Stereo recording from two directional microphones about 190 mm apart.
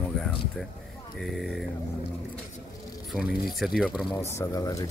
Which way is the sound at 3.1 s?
Centre (ahead or behind).